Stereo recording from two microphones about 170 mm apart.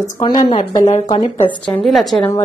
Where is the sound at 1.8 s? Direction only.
Centre (ahead or behind).